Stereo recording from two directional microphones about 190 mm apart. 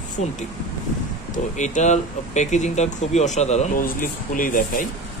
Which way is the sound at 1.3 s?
40° left (ahead or behind).